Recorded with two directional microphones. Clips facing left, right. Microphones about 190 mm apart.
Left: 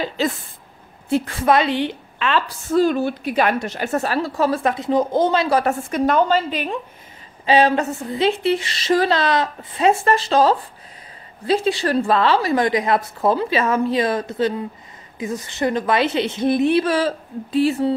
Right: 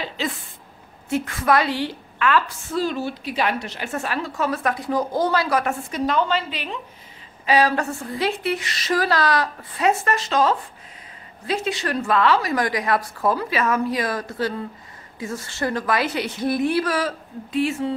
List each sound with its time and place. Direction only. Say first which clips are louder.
1.0 s a woman's voice: left 4 dB; 30° left (ahead or behind)
2.7 s a woman's voice: left 7 dB; 50° left (ahead or behind); by 5.8 s 30° left (ahead or behind)
5.9 s a woman's voice: left 5 dB; 50° left (ahead or behind)
7.4 s a woman's voice: left 3 dB; 25° left (ahead or behind)